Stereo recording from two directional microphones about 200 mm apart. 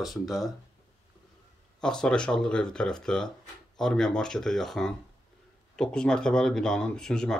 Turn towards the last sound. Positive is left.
turn(degrees=5)  # may be behind; listen again after turning